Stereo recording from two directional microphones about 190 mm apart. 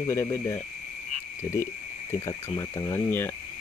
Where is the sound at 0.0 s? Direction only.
15° left (ahead or behind).